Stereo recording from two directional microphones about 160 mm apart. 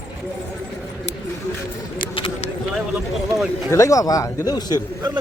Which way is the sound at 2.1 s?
35° left (ahead or behind).